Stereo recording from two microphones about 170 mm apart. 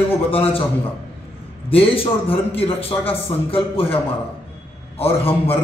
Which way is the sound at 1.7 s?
35° left (ahead or behind).